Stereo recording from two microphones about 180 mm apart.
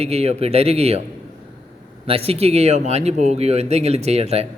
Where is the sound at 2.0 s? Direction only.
35° right (ahead or behind).